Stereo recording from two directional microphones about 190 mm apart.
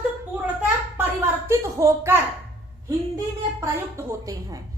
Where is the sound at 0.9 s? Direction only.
15° right (ahead or behind).